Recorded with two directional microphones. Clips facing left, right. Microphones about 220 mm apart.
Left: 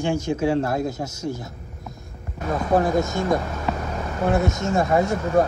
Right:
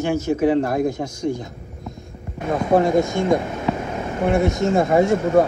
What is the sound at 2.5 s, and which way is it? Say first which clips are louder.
Speech: right 3 dB; 25° right (ahead or behind).